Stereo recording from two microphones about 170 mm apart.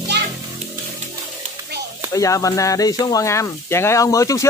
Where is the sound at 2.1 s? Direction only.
20° left (ahead or behind).